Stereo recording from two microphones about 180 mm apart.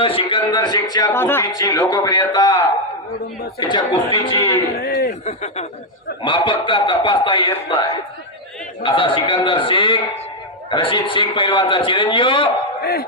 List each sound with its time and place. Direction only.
0.0 s speech: 30° left (ahead or behind)
3.6 s speech: 25° left (ahead or behind)
4.7 s a man's voice: 60° left (ahead or behind)
5.2 s speech: 40° left (ahead or behind)
6.2 s speech: 25° left (ahead or behind)
12.8 s speech: 60° left (ahead or behind)